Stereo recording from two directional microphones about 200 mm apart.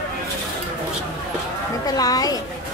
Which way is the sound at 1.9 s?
20° left (ahead or behind).